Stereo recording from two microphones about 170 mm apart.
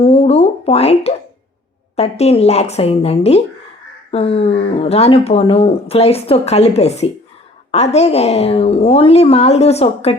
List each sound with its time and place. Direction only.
0.0 s speech: 35° left (ahead or behind)